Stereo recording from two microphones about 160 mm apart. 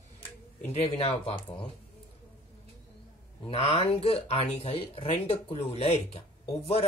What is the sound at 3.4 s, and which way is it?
Speech, 35° left (ahead or behind).